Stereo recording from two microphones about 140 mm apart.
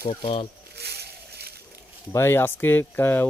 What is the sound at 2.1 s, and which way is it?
Speech, 15° left (ahead or behind).